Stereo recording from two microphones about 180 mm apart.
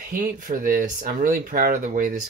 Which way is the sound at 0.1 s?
50° right (ahead or behind).